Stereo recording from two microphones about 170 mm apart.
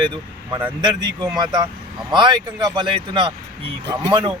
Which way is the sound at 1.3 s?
25° right (ahead or behind).